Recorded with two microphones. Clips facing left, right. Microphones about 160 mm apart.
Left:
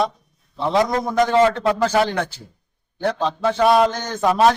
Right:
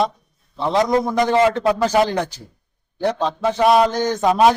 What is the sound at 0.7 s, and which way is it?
A man's voice, 20° right (ahead or behind).